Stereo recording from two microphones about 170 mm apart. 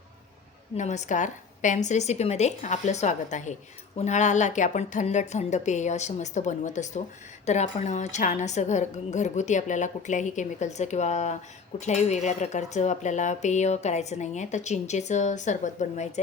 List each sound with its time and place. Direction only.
0.8 s speech: 45° left (ahead or behind)